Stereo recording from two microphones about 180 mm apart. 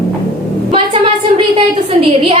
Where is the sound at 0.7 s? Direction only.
30° right (ahead or behind).